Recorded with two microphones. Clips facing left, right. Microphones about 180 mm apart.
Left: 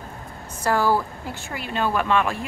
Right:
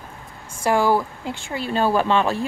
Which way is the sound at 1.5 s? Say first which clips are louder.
Right 4 dB; 35° right (ahead or behind).